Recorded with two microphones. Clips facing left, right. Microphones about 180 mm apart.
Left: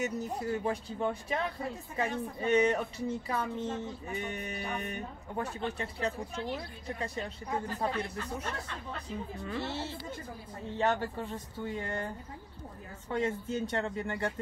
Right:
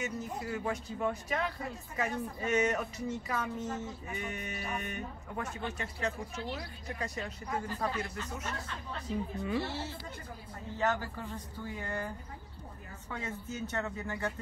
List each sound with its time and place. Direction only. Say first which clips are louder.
0.0 s speech: left 4 dB; 35° left (ahead or behind)
9.6 s speech: even; 25° left (ahead or behind)
13.1 s speech: left 8 dB; 30° left (ahead or behind)